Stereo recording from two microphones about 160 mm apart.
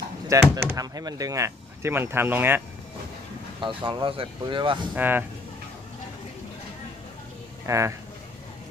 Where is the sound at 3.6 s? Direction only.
30° right (ahead or behind).